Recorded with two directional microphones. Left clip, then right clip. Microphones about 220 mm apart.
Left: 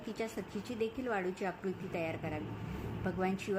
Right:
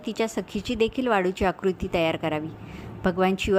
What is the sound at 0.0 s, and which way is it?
A woman's voice, 40° right (ahead or behind).